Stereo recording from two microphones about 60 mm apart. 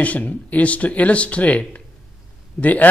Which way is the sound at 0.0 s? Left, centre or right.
Left.